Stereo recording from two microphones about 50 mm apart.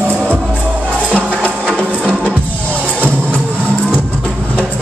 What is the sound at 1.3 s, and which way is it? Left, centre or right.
Music, left.